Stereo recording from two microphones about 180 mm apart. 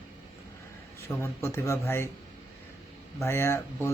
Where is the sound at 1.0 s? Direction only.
15° left (ahead or behind).